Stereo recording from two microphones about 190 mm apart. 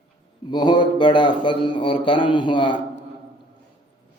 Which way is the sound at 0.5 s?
25° left (ahead or behind).